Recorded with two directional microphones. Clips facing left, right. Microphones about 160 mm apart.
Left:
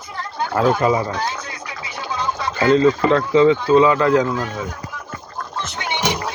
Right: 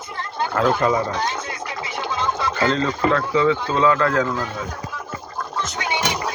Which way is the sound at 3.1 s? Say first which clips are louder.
Left 5 dB; 25° left (ahead or behind).